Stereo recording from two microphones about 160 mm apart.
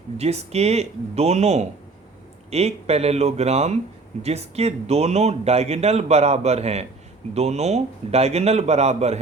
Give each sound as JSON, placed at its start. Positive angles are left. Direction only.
{"t": 0.2, "sound": "a man's voice", "side_deg": -40}